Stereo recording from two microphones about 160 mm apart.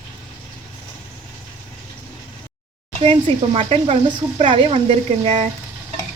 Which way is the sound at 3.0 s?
35° right (ahead or behind).